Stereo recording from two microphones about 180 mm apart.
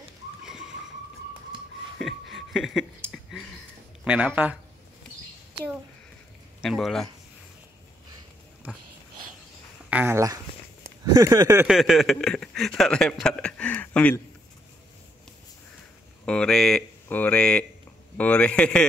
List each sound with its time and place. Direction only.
0.4 s a sound: 5° right (ahead or behind)
2.0 s a sound: centre (ahead or behind)
4.0 s speech: 10° right (ahead or behind)
6.6 s speech: centre (ahead or behind)
9.8 s speech: 10° right (ahead or behind)
11.6 s speech: centre (ahead or behind)
16.3 s speech: 5° left (ahead or behind)